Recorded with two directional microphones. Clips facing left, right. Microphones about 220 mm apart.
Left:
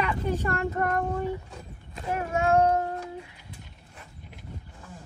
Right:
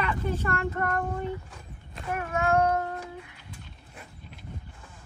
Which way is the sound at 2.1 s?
25° left (ahead or behind).